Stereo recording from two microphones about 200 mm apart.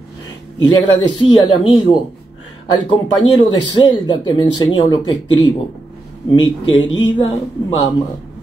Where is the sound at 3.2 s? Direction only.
25° left (ahead or behind).